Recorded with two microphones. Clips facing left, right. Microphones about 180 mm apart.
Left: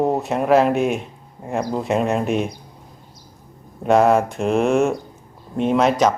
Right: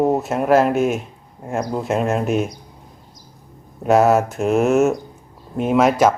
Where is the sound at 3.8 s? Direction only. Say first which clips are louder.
Right 1 dB; 5° right (ahead or behind).